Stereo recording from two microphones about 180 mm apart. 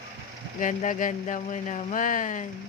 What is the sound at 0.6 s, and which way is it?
Speech, 45° left (ahead or behind).